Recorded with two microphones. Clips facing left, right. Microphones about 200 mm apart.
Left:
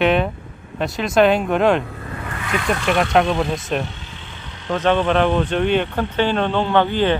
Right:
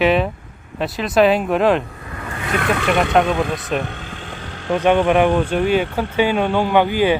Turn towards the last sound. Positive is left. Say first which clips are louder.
# right 2 dB
turn(degrees=-10)  # may be behind; listen again after turning